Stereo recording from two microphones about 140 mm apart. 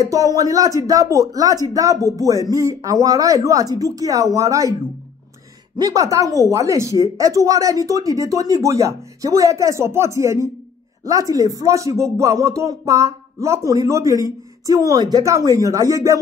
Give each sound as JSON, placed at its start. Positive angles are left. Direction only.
{"t": 0.0, "sound": "speech", "side_deg": -25}
{"t": 5.8, "sound": "speech", "side_deg": -25}